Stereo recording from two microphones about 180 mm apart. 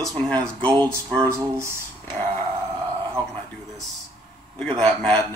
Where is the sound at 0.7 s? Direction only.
20° right (ahead or behind).